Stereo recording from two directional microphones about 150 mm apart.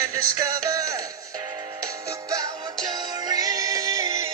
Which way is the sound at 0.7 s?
25° right (ahead or behind).